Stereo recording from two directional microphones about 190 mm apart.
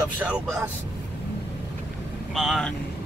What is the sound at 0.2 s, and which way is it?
Speech, 10° right (ahead or behind).